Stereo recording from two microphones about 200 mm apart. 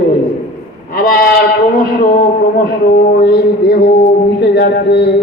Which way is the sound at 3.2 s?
50° left (ahead or behind).